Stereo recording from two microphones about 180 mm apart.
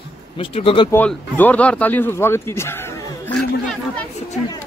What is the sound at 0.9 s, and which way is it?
Speech, 10° left (ahead or behind).